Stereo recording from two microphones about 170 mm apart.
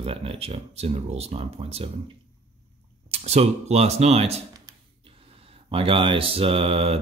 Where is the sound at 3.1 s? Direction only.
40° right (ahead or behind).